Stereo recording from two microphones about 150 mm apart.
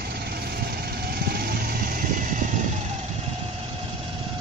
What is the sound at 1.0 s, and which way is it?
Vehicle, 90° right.